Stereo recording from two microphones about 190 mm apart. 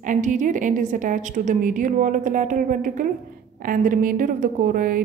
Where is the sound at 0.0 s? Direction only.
45° right (ahead or behind).